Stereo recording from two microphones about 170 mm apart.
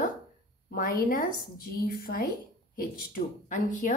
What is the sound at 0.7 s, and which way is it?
A woman's voice, 50° left (ahead or behind).